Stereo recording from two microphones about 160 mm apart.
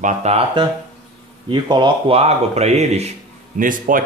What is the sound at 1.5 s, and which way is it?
Speech, 30° right (ahead or behind).